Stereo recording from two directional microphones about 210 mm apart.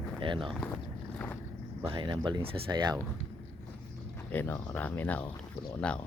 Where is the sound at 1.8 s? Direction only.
25° right (ahead or behind).